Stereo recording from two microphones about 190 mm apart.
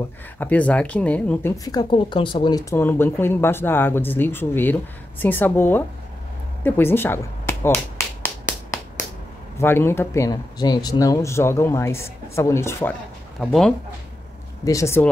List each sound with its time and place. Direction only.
0.4 s speech: 10° left (ahead or behind)
1.6 s speech: 20° left (ahead or behind)
2.7 s speech: 10° left (ahead or behind)
6.6 s finger snapping: 10° left (ahead or behind)
9.6 s speech: 10° left (ahead or behind)
13.4 s speech: centre (ahead or behind)
14.6 s speech: 15° left (ahead or behind)